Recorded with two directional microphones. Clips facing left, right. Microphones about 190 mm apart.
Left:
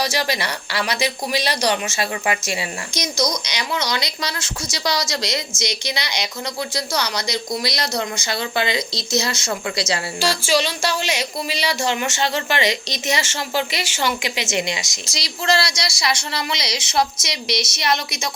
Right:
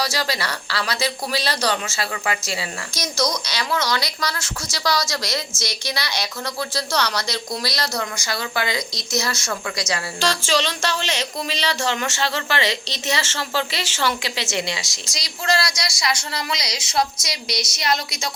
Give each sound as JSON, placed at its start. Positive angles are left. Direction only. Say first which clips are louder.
{"t": 0.0, "sound": "speech", "louder": "left 2 dB", "side_deg": 20}
{"t": 10.2, "sound": "speech", "louder": "left 2 dB", "side_deg": 10}